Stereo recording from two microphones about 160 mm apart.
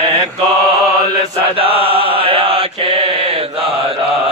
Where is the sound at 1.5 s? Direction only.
35° right (ahead or behind).